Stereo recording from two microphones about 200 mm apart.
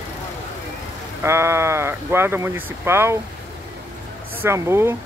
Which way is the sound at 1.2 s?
15° right (ahead or behind).